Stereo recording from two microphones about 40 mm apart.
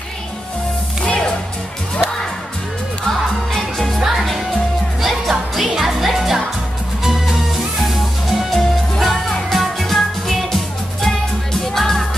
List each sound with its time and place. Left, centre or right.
1.0 s music: left
3.1 s music: centre
5.0 s music: centre